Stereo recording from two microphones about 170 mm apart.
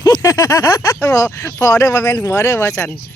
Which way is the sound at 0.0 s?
20° left (ahead or behind).